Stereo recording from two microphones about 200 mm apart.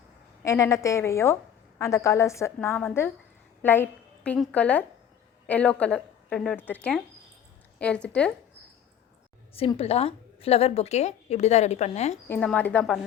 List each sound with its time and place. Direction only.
0.4 s a woman's voice: 15° left (ahead or behind)
9.6 s a woman's voice: 30° left (ahead or behind)
12.3 s a woman's voice: 5° left (ahead or behind)